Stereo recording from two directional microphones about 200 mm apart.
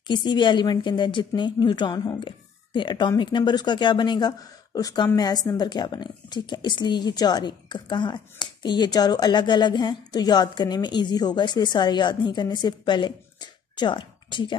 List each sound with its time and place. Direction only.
0.0 s a woman's voice: 25° left (ahead or behind)